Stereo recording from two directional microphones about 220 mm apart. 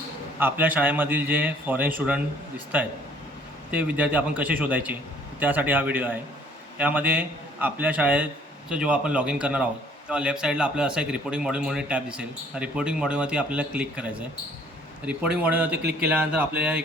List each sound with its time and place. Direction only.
0.3 s a man's voice: 10° right (ahead or behind)